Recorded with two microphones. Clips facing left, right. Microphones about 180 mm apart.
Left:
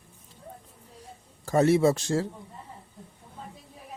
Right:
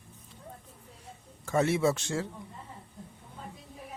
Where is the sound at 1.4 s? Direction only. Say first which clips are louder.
Left 5 dB; 40° left (ahead or behind).